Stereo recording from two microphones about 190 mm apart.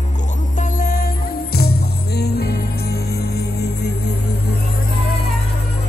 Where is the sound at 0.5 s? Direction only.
45° left (ahead or behind); by 4.1 s 60° left (ahead or behind).